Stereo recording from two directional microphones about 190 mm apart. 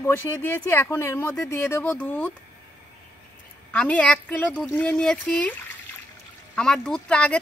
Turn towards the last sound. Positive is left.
turn(degrees=5)  # may be behind; listen again after turning